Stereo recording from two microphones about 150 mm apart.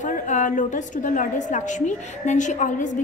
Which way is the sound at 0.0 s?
55° left (ahead or behind).